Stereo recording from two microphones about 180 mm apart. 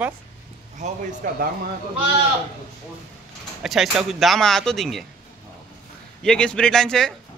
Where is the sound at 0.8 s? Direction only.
50° right (ahead or behind).